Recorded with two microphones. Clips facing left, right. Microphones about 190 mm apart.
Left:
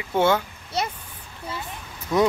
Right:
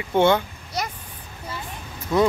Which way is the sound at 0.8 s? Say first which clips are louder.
Left 2 dB; 25° left (ahead or behind).